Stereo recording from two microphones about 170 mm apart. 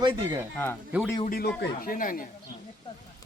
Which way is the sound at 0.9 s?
10° right (ahead or behind).